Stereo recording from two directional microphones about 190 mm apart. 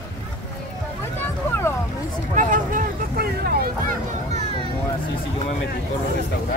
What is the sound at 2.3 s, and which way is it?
Vehicle, 40° right (ahead or behind).